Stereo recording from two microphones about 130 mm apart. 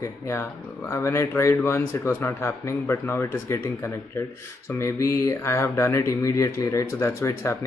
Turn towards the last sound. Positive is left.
turn(degrees=20)  # may be behind; listen again after turning